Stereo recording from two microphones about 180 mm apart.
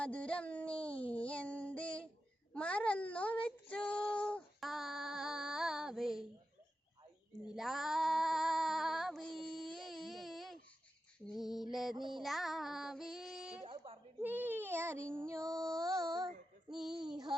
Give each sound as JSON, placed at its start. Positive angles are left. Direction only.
{"t": 0.0, "sound": "a sound", "side_deg": 5}
{"t": 0.9, "sound": "child singing", "side_deg": 30}
{"t": 1.1, "sound": "child singing", "side_deg": 5}
{"t": 2.5, "sound": "a child's voice", "side_deg": 5}
{"t": 3.4, "sound": "child singing", "side_deg": 5}
{"t": 7.4, "sound": "female singing", "side_deg": 0}
{"t": 11.3, "sound": "mantra", "side_deg": 0}
{"t": 12.1, "sound": "child singing", "side_deg": 0}
{"t": 13.7, "sound": "a sound", "side_deg": -30}
{"t": 14.2, "sound": "child singing", "side_deg": -10}
{"t": 15.2, "sound": "music", "side_deg": -15}
{"t": 15.8, "sound": "child singing", "side_deg": -20}